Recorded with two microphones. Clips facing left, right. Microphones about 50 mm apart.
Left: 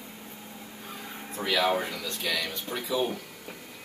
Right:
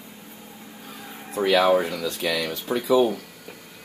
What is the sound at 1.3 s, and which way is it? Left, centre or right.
Speech, right.